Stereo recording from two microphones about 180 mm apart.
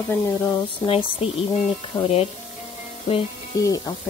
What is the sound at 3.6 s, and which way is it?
Speech, 20° left (ahead or behind).